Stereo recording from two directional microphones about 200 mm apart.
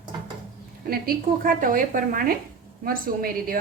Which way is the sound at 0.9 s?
45° right (ahead or behind).